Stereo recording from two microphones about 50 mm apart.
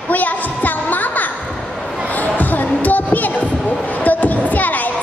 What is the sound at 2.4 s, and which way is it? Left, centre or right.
Music, left.